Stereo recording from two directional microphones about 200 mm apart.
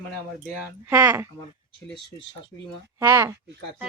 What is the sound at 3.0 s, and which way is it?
Speech, 15° right (ahead or behind).